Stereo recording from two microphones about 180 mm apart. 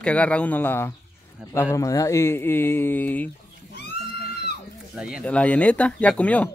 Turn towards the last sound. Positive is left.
turn(degrees=5)  # may be behind; listen again after turning